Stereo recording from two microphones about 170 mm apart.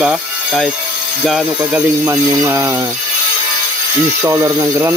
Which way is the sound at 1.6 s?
10° right (ahead or behind).